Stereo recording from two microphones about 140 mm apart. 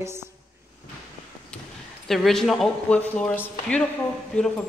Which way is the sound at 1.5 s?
5° left (ahead or behind).